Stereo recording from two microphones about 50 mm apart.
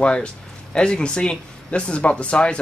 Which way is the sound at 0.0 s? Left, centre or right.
Left.